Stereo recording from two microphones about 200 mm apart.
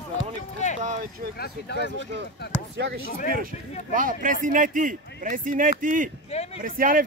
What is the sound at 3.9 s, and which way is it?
Speech, 45° right (ahead or behind).